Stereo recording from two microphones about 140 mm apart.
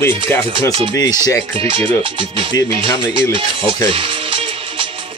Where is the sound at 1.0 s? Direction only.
30° left (ahead or behind).